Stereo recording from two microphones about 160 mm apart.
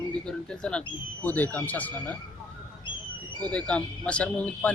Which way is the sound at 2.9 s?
30° left (ahead or behind).